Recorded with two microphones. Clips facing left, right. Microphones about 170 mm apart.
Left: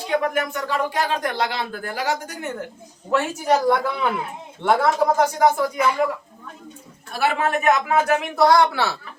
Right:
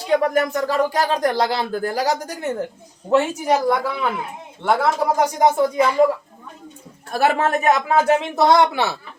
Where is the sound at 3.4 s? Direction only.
10° right (ahead or behind); by 6.0 s 25° right (ahead or behind).